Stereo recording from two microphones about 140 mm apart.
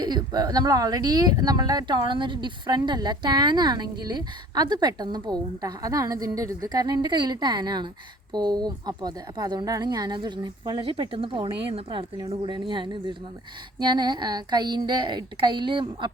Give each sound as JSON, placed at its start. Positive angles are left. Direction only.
{"t": 0.0, "sound": "speech", "side_deg": -30}